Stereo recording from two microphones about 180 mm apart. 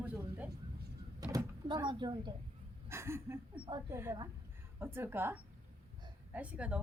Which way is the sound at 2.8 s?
15° right (ahead or behind).